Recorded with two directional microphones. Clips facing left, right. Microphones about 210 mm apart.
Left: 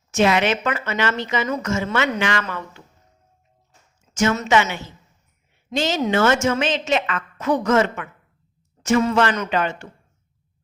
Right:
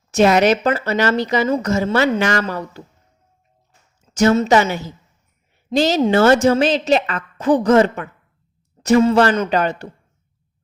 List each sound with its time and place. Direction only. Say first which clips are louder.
0.1 s speech: right 5 dB; 40° right (ahead or behind)
4.1 s speech: right 5 dB; 35° right (ahead or behind)